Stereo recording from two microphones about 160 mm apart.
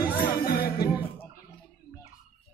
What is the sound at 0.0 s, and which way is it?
Music, 70° left (ahead or behind).